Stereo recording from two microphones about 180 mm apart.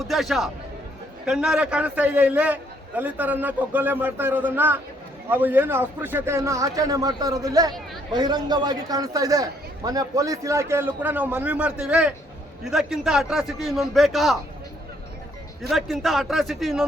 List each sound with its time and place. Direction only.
0.1 s a man's voice: centre (ahead or behind)
15.7 s a man's voice: centre (ahead or behind)